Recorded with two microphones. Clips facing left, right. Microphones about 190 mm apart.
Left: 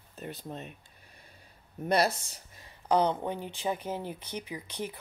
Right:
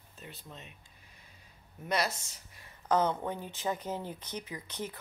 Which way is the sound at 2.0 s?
35° left (ahead or behind).